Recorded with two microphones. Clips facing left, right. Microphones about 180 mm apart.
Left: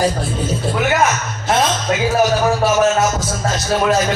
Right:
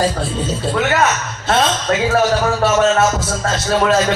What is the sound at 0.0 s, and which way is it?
A man's voice, 25° right (ahead or behind).